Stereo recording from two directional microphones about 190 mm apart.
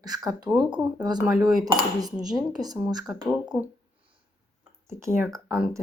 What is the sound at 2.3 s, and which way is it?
Speech, 20° right (ahead or behind).